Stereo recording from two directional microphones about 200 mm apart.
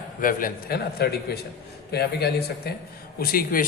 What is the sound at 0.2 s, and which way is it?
A man's voice, 45° left (ahead or behind).